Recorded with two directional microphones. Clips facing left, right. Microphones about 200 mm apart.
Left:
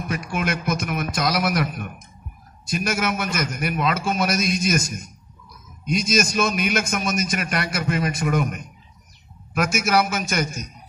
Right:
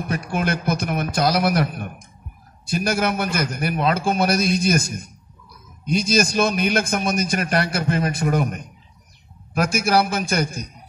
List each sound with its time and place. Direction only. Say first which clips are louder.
0.1 s a man's voice: right 2 dB; 35° right (ahead or behind)
5.9 s a man's voice: right 2 dB; 35° right (ahead or behind)